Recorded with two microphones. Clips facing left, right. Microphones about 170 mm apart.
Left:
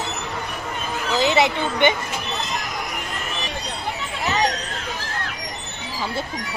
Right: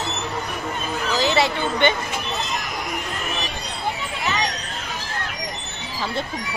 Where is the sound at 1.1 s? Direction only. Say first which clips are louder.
Left 2 dB; 20° left (ahead or behind).